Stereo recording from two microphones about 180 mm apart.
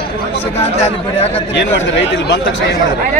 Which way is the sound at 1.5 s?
70° left (ahead or behind).